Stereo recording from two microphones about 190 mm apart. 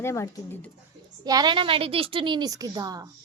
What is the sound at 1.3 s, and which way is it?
A woman's voice, 20° right (ahead or behind).